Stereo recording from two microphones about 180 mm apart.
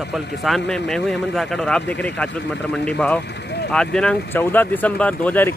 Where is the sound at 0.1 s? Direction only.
Centre (ahead or behind).